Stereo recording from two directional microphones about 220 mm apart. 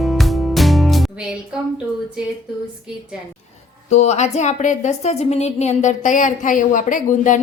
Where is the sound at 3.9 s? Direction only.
30° left (ahead or behind).